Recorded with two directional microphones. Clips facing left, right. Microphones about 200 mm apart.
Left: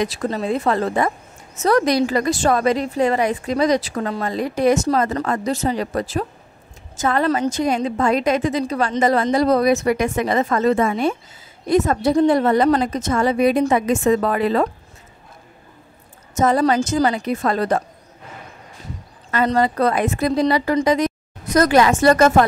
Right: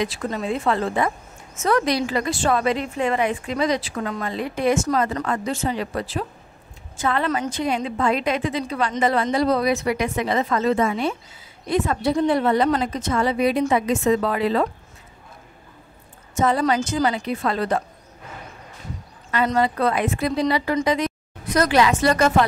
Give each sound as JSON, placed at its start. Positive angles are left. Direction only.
{"t": 0.0, "sound": "a woman's voice", "side_deg": 40}
{"t": 16.3, "sound": "speech", "side_deg": 45}
{"t": 19.3, "sound": "speech", "side_deg": 40}